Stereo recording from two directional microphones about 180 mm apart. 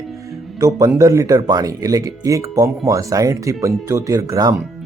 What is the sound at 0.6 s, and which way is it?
Speech, 15° right (ahead or behind).